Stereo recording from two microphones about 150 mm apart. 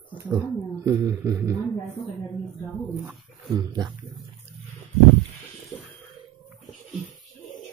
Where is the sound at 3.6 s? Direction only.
25° right (ahead or behind).